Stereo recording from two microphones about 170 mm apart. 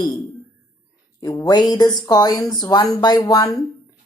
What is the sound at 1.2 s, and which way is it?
Speech, 25° left (ahead or behind).